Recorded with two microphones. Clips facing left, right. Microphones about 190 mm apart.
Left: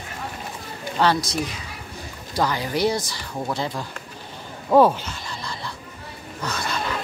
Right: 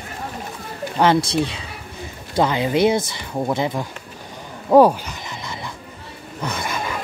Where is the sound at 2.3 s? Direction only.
20° right (ahead or behind).